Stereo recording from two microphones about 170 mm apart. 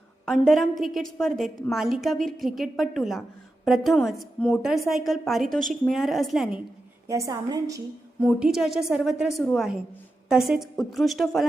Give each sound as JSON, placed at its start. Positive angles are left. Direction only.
{"t": 0.3, "sound": "a woman's voice", "side_deg": 0}
{"t": 7.1, "sound": "a woman's voice", "side_deg": -20}
{"t": 8.2, "sound": "a woman's voice", "side_deg": -5}